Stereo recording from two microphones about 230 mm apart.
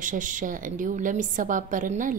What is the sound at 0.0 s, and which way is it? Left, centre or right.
A woman's voice, right.